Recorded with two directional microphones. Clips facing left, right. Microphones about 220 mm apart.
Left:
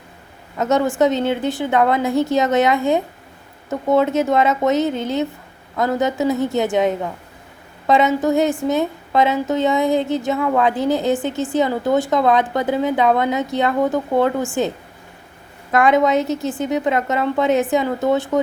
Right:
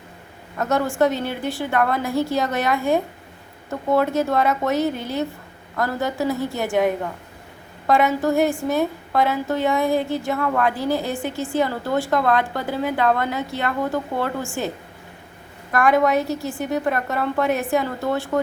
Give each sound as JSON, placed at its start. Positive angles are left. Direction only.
{"t": 0.6, "sound": "a woman's voice", "side_deg": 20}
{"t": 15.7, "sound": "a woman's voice", "side_deg": 20}